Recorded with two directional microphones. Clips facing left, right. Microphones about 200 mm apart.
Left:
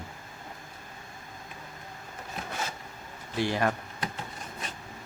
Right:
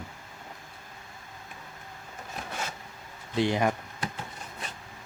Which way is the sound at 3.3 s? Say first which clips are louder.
Right 2 dB; 20° right (ahead or behind).